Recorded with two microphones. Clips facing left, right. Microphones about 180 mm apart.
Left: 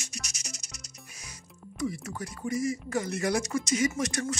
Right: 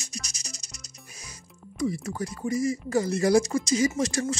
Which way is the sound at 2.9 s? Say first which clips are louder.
Right 9 dB; 30° right (ahead or behind).